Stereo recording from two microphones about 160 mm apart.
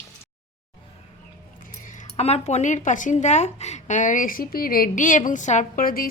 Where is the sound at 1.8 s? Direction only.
50° left (ahead or behind).